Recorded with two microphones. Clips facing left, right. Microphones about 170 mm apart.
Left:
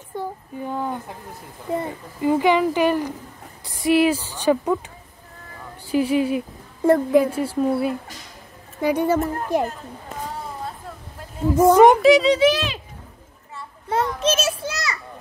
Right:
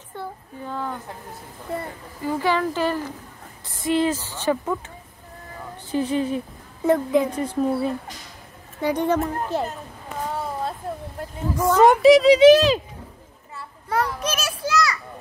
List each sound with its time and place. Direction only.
0.1 s a sound: 15° left (ahead or behind)
1.7 s a woman's voice: 20° left (ahead or behind)
5.9 s a woman's voice: 10° left (ahead or behind)
11.5 s a woman's voice: 15° left (ahead or behind)
12.0 s speech: centre (ahead or behind)
13.8 s children playing: 25° left (ahead or behind)